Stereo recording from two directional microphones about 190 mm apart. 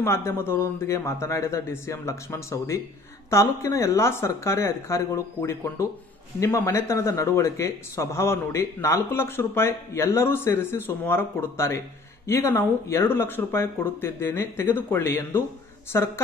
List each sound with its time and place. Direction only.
0.0 s speech: 15° left (ahead or behind)